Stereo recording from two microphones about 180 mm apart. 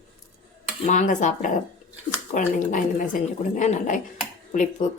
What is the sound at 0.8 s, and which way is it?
Speech, 40° left (ahead or behind).